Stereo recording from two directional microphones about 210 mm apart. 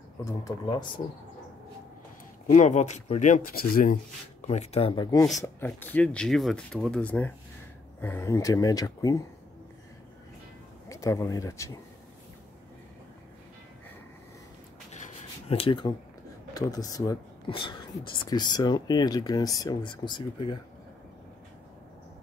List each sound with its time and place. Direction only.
0.2 s speech: 15° left (ahead or behind)
2.5 s speech: 35° left (ahead or behind); by 9.2 s 15° left (ahead or behind)
10.9 s speech: 15° left (ahead or behind)
14.9 s rub: 30° left (ahead or behind)
16.5 s speech: 15° left (ahead or behind)